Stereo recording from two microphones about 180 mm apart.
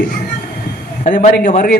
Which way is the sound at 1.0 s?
45° left (ahead or behind).